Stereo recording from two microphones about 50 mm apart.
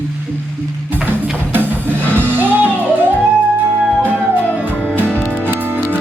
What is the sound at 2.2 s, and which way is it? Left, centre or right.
Music, right.